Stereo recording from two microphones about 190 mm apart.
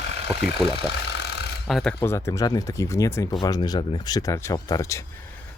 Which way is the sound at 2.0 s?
15° left (ahead or behind).